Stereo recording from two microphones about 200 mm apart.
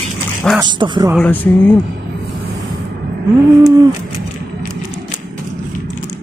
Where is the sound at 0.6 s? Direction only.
20° right (ahead or behind).